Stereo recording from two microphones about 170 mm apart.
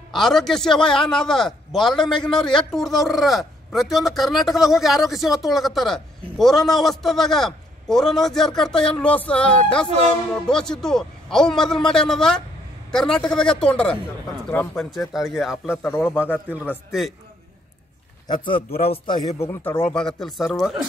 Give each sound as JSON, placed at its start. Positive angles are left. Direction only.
{"t": 0.1, "sound": "a man's voice", "side_deg": 0}
{"t": 15.7, "sound": "speech", "side_deg": 15}
{"t": 18.3, "sound": "a man's voice", "side_deg": 30}
{"t": 19.4, "sound": "a man's voice", "side_deg": 10}